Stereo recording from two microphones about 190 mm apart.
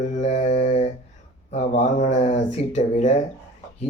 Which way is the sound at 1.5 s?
35° left (ahead or behind).